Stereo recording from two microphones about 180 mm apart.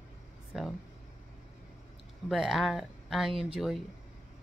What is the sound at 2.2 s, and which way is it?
Speech, centre (ahead or behind).